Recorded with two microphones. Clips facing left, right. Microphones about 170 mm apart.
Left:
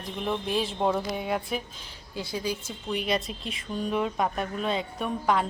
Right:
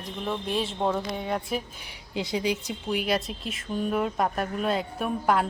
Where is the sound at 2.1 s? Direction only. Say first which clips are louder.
Right 4 dB; 20° right (ahead or behind).